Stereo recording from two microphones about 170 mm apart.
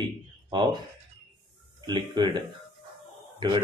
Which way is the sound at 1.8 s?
25° right (ahead or behind).